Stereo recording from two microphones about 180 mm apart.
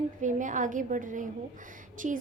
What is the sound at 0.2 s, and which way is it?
A woman's voice, 45° right (ahead or behind).